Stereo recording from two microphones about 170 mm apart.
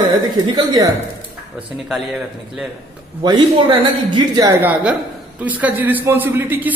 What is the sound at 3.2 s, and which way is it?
A man's voice, 25° right (ahead or behind).